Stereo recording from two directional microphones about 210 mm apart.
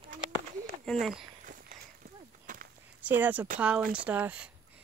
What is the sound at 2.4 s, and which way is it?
Walk, 40° right (ahead or behind).